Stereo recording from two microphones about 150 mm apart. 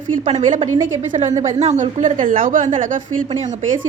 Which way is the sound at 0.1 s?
55° right (ahead or behind).